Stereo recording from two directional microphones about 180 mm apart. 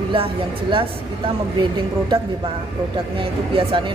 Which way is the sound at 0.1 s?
30° right (ahead or behind).